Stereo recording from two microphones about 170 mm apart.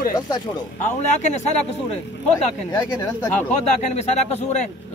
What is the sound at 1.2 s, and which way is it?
Speech, 45° left (ahead or behind).